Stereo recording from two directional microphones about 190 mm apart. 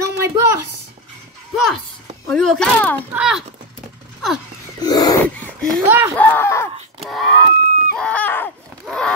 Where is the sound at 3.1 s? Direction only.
5° right (ahead or behind).